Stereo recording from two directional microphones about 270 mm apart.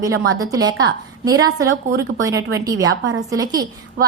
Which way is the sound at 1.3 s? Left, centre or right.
Right.